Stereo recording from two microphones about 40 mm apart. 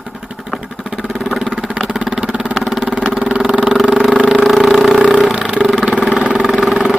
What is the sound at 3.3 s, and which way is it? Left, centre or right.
Vehicle, right.